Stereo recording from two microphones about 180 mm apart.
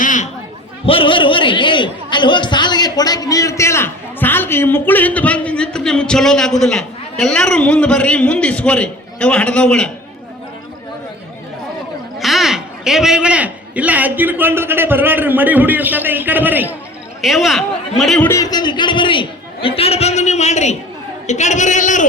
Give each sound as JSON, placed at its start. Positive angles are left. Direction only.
{"t": 0.0, "sound": "chatter", "side_deg": 45}
{"t": 0.9, "sound": "a man's voice", "side_deg": 30}
{"t": 12.2, "sound": "a man's voice", "side_deg": 0}
{"t": 18.2, "sound": "a man's voice", "side_deg": 15}